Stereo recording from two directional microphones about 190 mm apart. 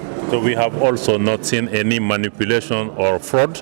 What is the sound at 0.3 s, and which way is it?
Speech, 10° left (ahead or behind).